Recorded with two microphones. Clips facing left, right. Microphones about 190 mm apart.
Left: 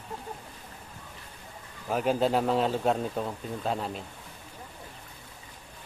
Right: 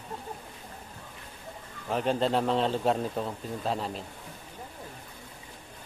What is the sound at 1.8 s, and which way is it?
Speech, 5° left (ahead or behind).